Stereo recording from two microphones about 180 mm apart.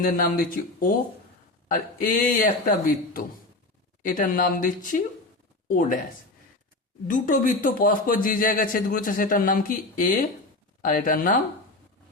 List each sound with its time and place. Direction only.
0.0 s speech: 50° left (ahead or behind)
7.1 s speech: 45° left (ahead or behind)